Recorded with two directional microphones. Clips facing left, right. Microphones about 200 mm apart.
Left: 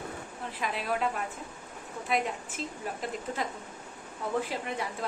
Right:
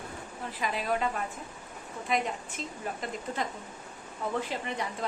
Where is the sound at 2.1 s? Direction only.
5° left (ahead or behind).